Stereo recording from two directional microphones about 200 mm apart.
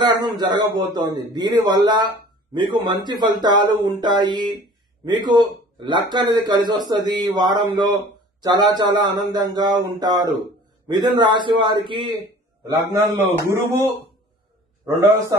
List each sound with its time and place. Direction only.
0.0 s speech: 20° right (ahead or behind)
13.5 s speech: 15° right (ahead or behind)